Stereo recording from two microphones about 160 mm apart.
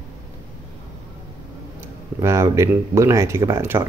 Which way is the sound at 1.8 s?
20° right (ahead or behind).